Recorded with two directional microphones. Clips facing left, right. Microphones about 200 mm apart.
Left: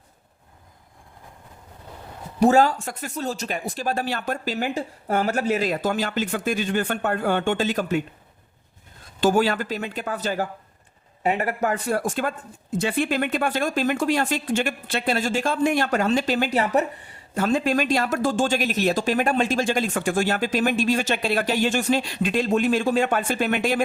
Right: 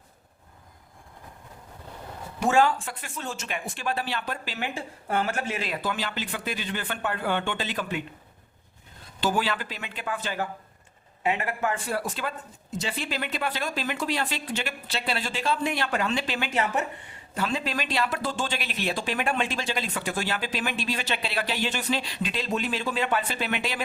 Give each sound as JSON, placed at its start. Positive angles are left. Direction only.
{"t": 2.4, "sound": "speech", "side_deg": 40}
{"t": 9.2, "sound": "speech", "side_deg": 45}